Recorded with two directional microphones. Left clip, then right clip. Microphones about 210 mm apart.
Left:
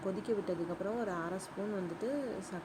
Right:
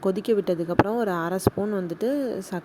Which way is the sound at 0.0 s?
45° right (ahead or behind).